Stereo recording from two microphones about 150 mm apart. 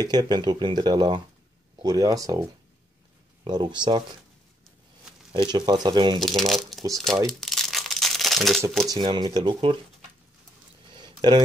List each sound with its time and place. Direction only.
0.0 s speech: 25° right (ahead or behind)
3.4 s speech: 30° right (ahead or behind)
5.3 s speech: 30° right (ahead or behind)
6.1 s speech: centre (ahead or behind)
7.2 s crumpling: centre (ahead or behind)
8.8 s speech: 30° right (ahead or behind)
10.9 s a sound: 30° right (ahead or behind)